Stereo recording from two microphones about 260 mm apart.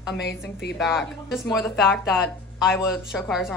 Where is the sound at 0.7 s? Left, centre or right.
Centre.